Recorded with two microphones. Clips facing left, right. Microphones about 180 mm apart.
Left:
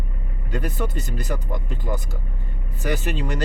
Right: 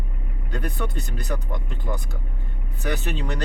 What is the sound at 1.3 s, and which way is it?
Speech, 10° left (ahead or behind).